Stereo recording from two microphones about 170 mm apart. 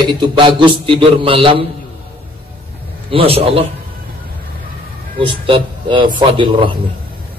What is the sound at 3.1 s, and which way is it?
Speech, 35° right (ahead or behind).